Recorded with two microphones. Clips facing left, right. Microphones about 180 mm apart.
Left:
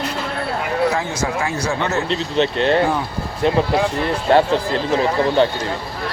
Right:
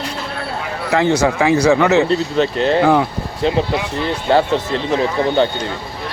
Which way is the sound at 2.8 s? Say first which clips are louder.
Right 6 dB; 75° right (ahead or behind).